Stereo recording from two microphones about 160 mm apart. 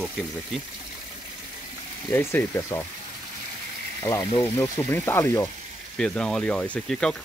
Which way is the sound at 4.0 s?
15° left (ahead or behind).